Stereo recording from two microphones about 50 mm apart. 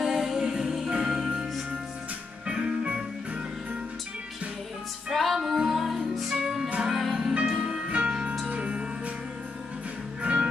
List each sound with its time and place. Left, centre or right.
0.0 s music: centre
5.1 s music: centre
7.9 s music: right
10.2 s music: right